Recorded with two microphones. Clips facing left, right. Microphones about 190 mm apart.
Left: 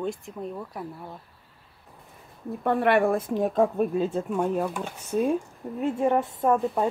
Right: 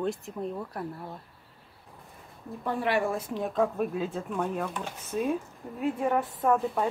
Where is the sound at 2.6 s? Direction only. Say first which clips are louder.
Left 6 dB; 60° left (ahead or behind).